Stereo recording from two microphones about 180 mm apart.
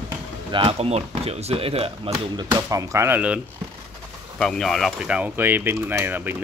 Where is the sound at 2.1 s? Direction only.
20° right (ahead or behind).